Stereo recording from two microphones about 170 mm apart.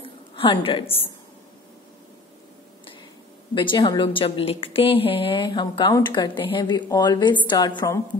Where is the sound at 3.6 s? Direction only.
25° left (ahead or behind).